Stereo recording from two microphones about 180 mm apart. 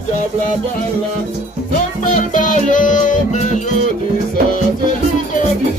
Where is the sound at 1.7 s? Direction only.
45° left (ahead or behind).